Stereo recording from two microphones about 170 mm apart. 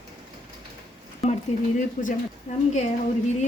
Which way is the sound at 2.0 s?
45° left (ahead or behind).